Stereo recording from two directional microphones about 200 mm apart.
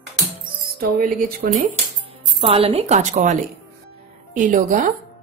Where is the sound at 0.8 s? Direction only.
50° right (ahead or behind).